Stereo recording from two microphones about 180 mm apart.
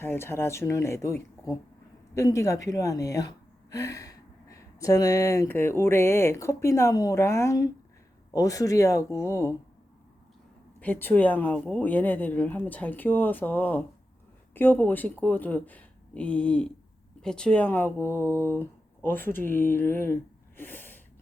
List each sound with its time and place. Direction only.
0.0 s speech: 15° left (ahead or behind)
10.8 s speech: 10° left (ahead or behind)
20.6 s a sound: 10° left (ahead or behind)